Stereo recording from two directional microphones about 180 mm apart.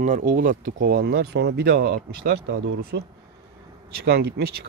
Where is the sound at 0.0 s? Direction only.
45° right (ahead or behind).